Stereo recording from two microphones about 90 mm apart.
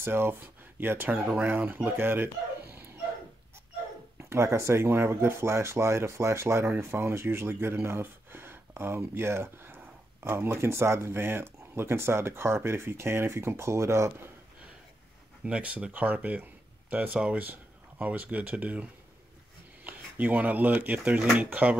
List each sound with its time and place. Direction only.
0.0 s speech: 25° right (ahead or behind)
2.7 s dog: 25° right (ahead or behind)
4.2 s speech: 30° right (ahead or behind)
15.4 s speech: 15° right (ahead or behind)